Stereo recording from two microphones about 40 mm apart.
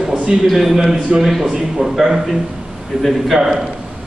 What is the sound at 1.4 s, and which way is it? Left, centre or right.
A man's voice, centre.